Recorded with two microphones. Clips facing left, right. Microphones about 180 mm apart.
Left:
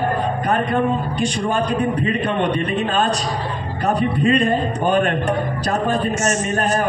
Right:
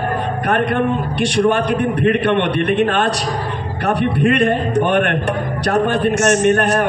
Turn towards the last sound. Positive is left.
turn(degrees=-75)  # may be behind; listen again after turning